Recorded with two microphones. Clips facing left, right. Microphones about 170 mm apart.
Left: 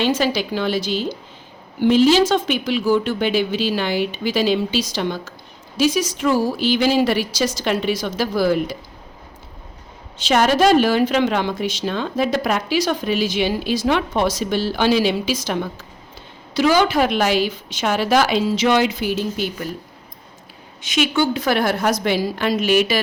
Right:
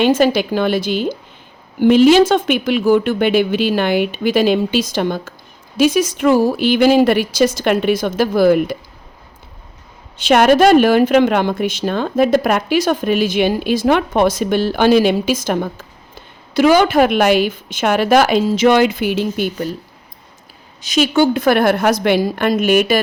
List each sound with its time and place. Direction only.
0.0 s speech: 55° right (ahead or behind)
10.2 s a woman's voice: 60° right (ahead or behind)
20.8 s a woman's voice: 40° right (ahead or behind)